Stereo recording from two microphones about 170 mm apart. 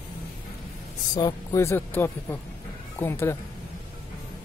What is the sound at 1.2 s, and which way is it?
Speech, 20° left (ahead or behind).